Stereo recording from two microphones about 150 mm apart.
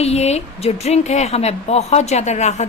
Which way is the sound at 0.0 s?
45° left (ahead or behind).